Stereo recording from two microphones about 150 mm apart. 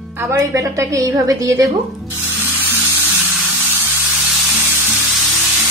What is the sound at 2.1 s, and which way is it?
Rub, 15° right (ahead or behind).